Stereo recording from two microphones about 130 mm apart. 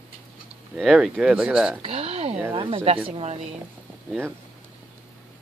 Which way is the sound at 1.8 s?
45° right (ahead or behind).